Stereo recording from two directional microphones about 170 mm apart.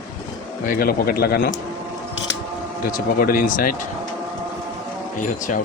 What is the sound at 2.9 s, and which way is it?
Speech, 55° left (ahead or behind).